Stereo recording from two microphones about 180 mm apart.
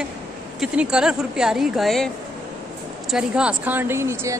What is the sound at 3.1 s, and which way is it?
A woman's voice, 5° right (ahead or behind).